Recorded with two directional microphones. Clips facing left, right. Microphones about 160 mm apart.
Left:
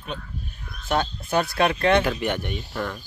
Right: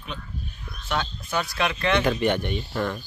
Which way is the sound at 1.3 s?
50° left (ahead or behind).